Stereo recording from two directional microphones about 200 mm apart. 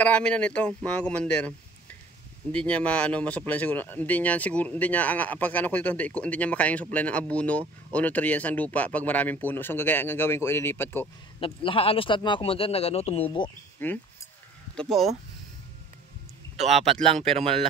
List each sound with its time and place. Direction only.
0.0 s speech: 5° left (ahead or behind)
2.5 s speech: 5° left (ahead or behind)
11.3 s speech: 25° left (ahead or behind)
13.8 s speech: 10° left (ahead or behind)
14.8 s speech: centre (ahead or behind)
16.5 s speech: 35° right (ahead or behind)